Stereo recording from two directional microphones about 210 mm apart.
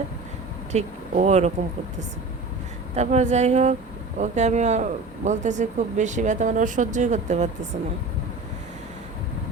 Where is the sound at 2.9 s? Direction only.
35° right (ahead or behind).